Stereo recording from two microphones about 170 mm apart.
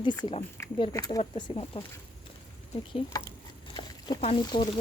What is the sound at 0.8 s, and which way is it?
Speech, 20° left (ahead or behind).